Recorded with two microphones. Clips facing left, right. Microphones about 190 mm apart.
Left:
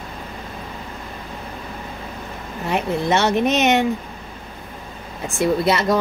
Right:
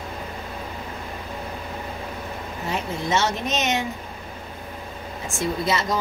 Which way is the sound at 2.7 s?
60° left (ahead or behind).